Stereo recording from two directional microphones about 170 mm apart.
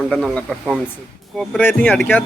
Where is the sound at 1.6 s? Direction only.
10° left (ahead or behind).